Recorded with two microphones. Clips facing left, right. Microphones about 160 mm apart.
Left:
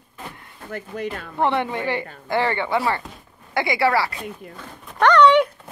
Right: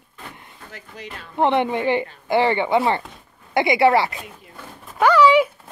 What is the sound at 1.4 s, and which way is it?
Speech, 20° right (ahead or behind).